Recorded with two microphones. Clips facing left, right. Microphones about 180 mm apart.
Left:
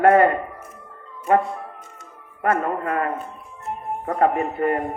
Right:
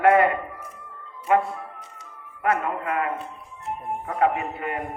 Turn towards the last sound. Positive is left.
turn(degrees=40)  # may be behind; listen again after turning